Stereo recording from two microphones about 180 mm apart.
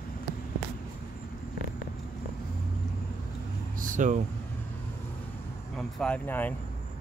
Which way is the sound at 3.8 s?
45° right (ahead or behind).